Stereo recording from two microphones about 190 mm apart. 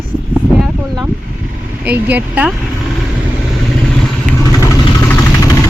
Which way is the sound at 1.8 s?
10° right (ahead or behind).